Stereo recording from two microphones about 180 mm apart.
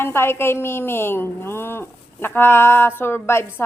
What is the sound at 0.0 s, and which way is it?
A woman's voice, 15° left (ahead or behind).